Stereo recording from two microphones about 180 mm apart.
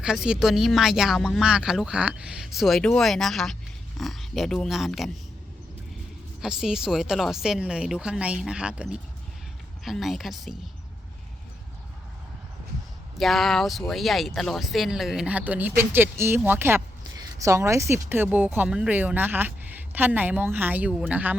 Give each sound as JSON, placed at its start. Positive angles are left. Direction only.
{"t": 0.0, "sound": "speech", "side_deg": -5}
{"t": 6.4, "sound": "speech", "side_deg": -5}
{"t": 13.1, "sound": "speech", "side_deg": 0}